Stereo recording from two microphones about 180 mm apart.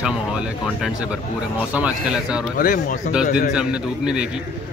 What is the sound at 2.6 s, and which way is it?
Speech, 55° left (ahead or behind).